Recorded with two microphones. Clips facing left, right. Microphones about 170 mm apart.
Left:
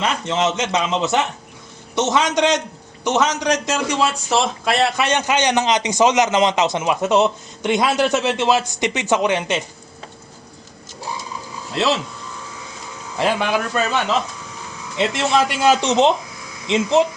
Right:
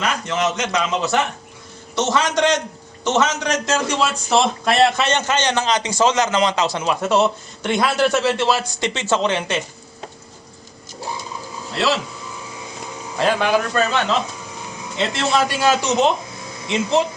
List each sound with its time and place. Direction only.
0.0 s a man's voice: 25° left (ahead or behind)
11.7 s speech: 20° left (ahead or behind)
13.1 s a man's voice: 5° left (ahead or behind)
14.9 s a man's voice: 15° left (ahead or behind)